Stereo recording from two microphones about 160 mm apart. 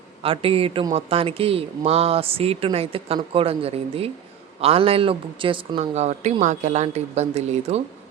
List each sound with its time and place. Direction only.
0.2 s speech: 35° right (ahead or behind)